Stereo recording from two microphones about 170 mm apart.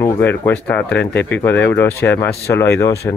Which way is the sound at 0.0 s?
15° left (ahead or behind).